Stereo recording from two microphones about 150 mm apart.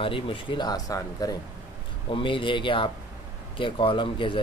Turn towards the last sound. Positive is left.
turn(degrees=35)  # may be behind; listen again after turning